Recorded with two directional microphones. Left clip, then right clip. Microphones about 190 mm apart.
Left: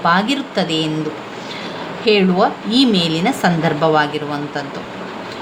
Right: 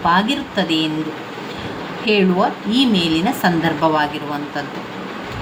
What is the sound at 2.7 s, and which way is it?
A woman's voice, 40° left (ahead or behind).